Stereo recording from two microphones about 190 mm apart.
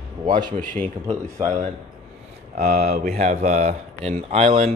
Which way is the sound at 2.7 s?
55° right (ahead or behind).